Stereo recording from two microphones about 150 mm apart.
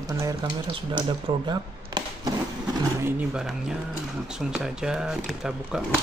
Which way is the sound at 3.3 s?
5° right (ahead or behind).